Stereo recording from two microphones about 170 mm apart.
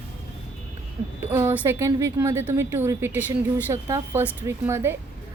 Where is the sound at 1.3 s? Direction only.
15° right (ahead or behind).